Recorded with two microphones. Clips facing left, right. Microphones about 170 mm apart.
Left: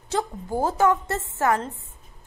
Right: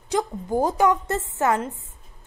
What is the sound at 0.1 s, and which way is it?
A woman's voice, 15° right (ahead or behind).